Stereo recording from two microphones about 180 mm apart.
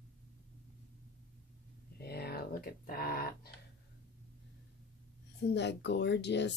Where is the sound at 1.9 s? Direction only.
60° left (ahead or behind).